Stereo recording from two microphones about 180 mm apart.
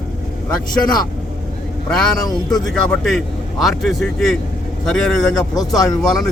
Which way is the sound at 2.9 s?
Centre (ahead or behind).